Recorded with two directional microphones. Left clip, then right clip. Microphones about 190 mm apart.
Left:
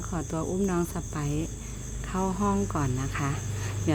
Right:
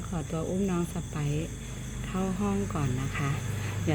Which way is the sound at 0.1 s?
20° left (ahead or behind).